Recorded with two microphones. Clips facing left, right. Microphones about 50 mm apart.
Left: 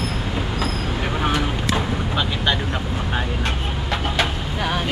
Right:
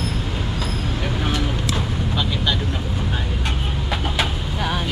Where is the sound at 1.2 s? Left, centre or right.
Centre.